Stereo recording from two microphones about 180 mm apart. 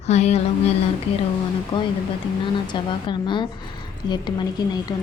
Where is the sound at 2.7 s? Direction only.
25° left (ahead or behind).